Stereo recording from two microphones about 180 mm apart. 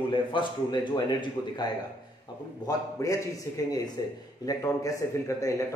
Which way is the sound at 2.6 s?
20° left (ahead or behind).